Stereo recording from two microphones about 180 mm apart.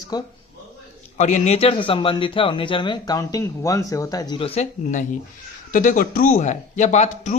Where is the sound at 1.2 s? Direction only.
40° left (ahead or behind).